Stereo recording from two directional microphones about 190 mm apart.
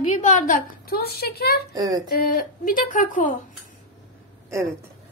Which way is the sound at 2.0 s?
50° left (ahead or behind).